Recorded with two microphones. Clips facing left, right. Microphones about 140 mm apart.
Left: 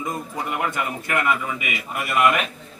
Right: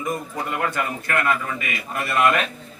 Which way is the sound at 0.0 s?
20° left (ahead or behind).